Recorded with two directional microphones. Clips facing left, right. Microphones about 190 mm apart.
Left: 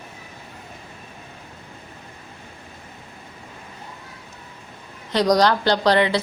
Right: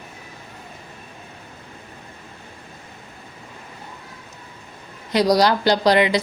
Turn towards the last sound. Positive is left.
turn(degrees=-15)  # may be behind; listen again after turning